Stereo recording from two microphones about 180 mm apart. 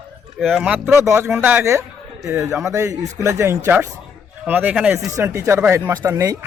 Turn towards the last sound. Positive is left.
turn(degrees=-20)  # may be behind; listen again after turning